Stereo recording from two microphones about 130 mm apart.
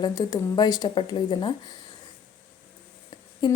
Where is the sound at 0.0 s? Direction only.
30° left (ahead or behind).